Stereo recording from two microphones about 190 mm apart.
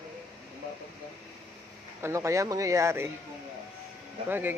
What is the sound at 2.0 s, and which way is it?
Speech, 15° right (ahead or behind).